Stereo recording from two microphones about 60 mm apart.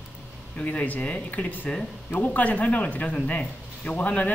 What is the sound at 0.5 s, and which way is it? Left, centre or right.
Speech, left.